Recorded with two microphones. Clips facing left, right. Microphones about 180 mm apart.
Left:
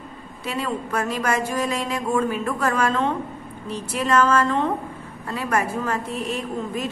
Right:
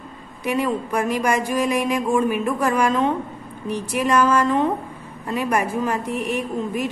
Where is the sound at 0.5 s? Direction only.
15° right (ahead or behind).